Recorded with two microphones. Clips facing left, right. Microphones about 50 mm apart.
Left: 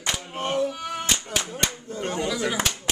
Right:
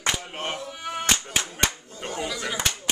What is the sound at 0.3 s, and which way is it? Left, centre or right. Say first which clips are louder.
Music: left 4 dB; right.